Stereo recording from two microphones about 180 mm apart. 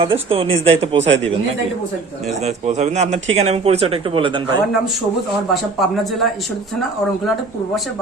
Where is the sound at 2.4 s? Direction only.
40° right (ahead or behind).